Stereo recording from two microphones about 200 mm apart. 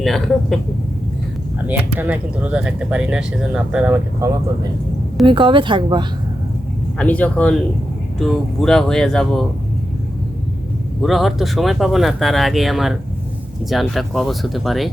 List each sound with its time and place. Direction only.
0.0 s speech: centre (ahead or behind)
1.6 s speech: 10° right (ahead or behind)
5.2 s speech: 25° right (ahead or behind)
7.0 s speech: 5° left (ahead or behind)
11.0 s speech: centre (ahead or behind)